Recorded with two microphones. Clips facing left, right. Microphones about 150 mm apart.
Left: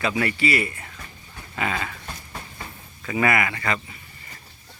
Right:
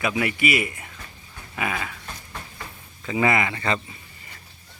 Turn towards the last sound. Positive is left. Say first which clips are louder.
# right 1 dB
turn(degrees=-25)  # may be behind; listen again after turning